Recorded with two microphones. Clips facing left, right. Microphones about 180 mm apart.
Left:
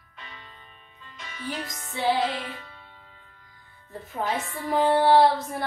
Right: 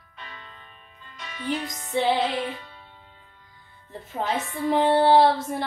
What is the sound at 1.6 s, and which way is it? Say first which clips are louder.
Speech: right 1 dB; 20° right (ahead or behind).